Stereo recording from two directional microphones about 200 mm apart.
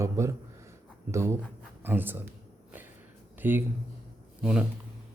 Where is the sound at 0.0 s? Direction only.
15° right (ahead or behind).